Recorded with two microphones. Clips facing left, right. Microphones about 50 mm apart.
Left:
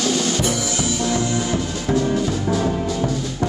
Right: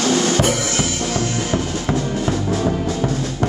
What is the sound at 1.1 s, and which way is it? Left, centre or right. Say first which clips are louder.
Music: even; right.